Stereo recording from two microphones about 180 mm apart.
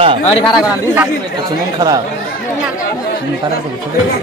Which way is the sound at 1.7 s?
20° right (ahead or behind).